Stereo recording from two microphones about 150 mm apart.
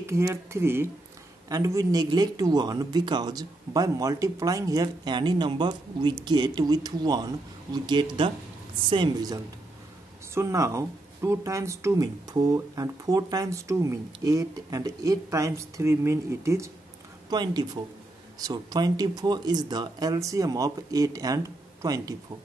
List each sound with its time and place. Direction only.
0.0 s speech: 20° right (ahead or behind)